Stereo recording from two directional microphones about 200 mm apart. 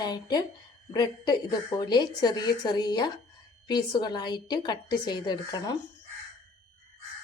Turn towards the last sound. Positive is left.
turn(degrees=20)  # may be behind; listen again after turning